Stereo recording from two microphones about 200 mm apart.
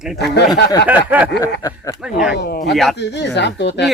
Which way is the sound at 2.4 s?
55° left (ahead or behind).